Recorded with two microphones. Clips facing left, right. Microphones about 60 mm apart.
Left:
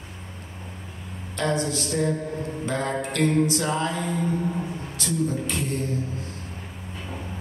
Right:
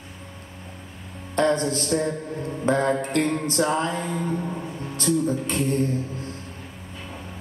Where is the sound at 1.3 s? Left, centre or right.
Right.